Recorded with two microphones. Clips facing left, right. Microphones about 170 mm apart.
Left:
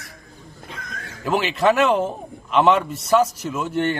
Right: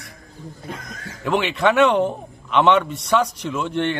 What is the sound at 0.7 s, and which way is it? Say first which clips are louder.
Speech: right 5 dB; 45° right (ahead or behind).